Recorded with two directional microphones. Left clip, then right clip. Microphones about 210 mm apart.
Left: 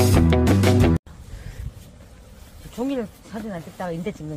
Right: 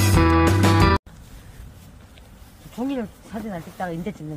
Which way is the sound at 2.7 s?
35° left (ahead or behind).